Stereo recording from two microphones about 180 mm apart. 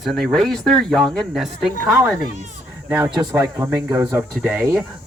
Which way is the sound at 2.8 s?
15° right (ahead or behind).